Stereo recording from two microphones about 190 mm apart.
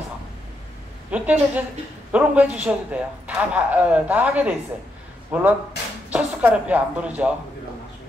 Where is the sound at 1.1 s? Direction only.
10° right (ahead or behind).